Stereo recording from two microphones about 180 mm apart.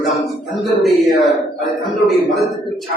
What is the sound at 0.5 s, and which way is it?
Speech, centre (ahead or behind).